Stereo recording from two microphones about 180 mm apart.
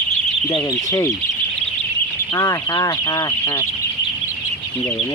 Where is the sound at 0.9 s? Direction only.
20° left (ahead or behind).